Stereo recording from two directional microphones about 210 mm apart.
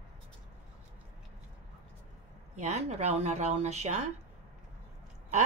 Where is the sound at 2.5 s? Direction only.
35° right (ahead or behind).